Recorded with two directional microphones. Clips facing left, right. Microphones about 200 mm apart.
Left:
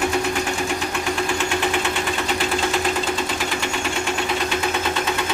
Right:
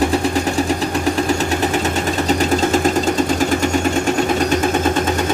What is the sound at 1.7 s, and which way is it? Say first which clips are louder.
Engine: right 5 dB; 40° right (ahead or behind).